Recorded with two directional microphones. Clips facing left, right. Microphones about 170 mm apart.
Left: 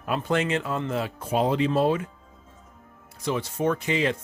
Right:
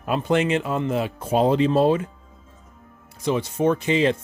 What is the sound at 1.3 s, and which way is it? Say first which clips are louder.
Speech: right 5 dB; 30° right (ahead or behind).